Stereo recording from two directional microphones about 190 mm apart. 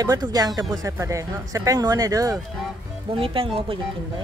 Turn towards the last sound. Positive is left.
turn(degrees=-30)  # may be behind; listen again after turning